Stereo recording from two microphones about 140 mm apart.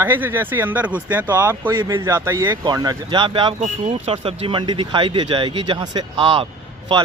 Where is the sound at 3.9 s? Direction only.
45° right (ahead or behind).